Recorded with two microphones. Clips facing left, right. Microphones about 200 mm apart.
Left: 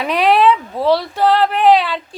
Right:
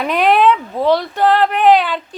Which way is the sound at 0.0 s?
Centre (ahead or behind).